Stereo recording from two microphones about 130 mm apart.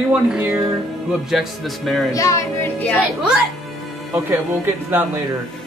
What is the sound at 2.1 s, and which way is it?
Speech, 25° left (ahead or behind).